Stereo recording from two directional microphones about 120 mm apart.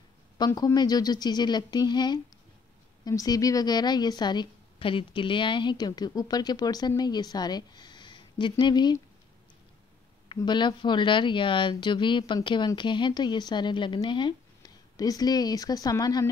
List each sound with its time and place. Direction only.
0.4 s a woman's voice: 35° left (ahead or behind)
10.2 s a woman's voice: 40° left (ahead or behind)